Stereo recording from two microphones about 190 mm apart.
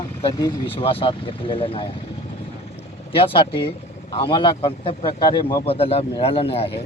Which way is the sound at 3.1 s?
30° left (ahead or behind).